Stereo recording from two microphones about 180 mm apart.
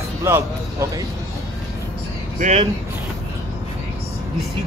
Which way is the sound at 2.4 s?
40° right (ahead or behind).